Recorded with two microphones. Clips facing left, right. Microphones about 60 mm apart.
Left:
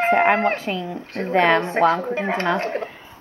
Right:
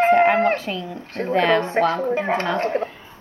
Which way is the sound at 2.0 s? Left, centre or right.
Centre.